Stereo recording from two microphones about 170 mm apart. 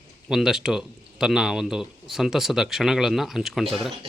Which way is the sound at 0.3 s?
5° right (ahead or behind).